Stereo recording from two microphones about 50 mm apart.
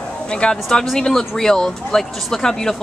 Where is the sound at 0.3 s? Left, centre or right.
Centre.